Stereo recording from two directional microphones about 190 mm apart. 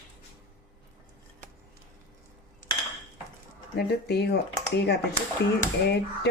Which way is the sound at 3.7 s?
60° left (ahead or behind).